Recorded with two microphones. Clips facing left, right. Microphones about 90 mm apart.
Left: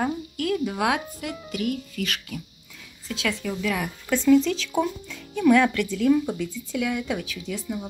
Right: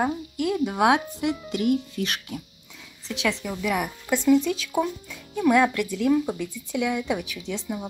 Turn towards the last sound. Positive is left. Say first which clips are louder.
# even
turn(degrees=-20)  # may be behind; listen again after turning